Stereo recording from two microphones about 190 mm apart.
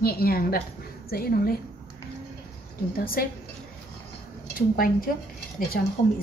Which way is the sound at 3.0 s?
50° left (ahead or behind).